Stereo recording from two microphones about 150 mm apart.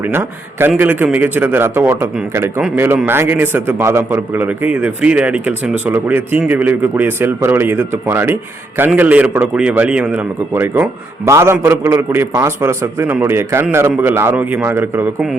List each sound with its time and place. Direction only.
0.0 s a man's voice: 15° right (ahead or behind)